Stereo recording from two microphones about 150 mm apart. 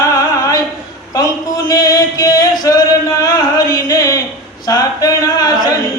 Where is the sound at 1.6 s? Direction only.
25° left (ahead or behind).